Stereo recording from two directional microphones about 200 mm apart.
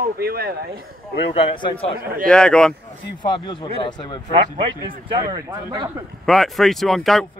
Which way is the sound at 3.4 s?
20° left (ahead or behind).